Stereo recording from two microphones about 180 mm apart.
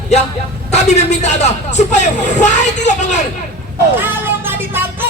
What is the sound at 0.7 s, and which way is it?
Speech, 40° left (ahead or behind).